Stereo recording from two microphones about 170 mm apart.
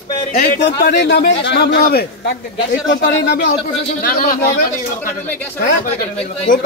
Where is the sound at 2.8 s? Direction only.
90° left.